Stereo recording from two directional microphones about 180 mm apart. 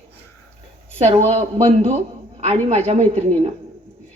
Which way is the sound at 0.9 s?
35° right (ahead or behind).